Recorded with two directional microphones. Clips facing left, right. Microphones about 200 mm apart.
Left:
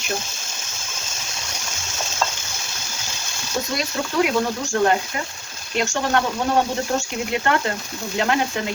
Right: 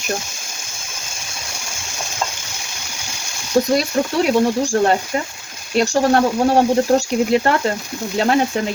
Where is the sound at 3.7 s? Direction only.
35° right (ahead or behind).